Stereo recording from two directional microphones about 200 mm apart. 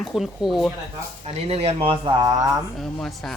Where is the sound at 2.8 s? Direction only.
Centre (ahead or behind).